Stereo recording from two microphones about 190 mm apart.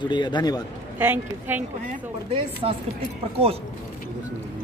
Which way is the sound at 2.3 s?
30° right (ahead or behind).